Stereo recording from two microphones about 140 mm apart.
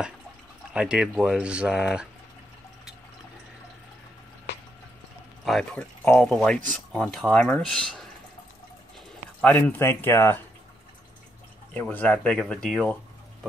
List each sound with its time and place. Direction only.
0.7 s speech: 5° right (ahead or behind)
5.4 s speech: 5° left (ahead or behind)
9.4 s speech: 10° left (ahead or behind)
11.7 s speech: 15° left (ahead or behind)